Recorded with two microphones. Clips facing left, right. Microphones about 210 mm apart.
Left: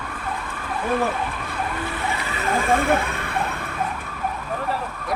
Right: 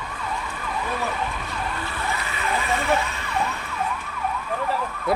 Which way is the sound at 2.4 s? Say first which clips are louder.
Left 6 dB; 50° left (ahead or behind).